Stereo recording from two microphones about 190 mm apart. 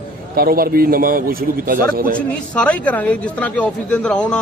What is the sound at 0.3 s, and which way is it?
A man's voice, 50° right (ahead or behind).